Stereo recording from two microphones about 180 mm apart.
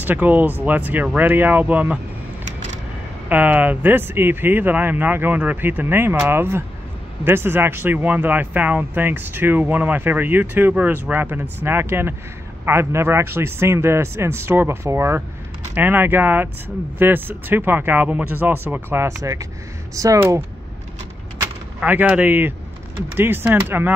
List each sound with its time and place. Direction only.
0.0 s speech: 10° right (ahead or behind)
3.3 s speech: 10° right (ahead or behind)
21.4 s a sound: 10° right (ahead or behind)
23.1 s speech: 10° right (ahead or behind)